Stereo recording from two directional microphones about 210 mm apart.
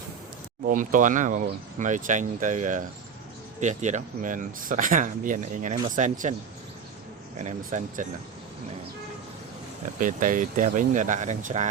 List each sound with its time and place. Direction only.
0.7 s speech: 40° right (ahead or behind)
7.3 s speech: 35° right (ahead or behind)
10.0 s speech: 40° right (ahead or behind)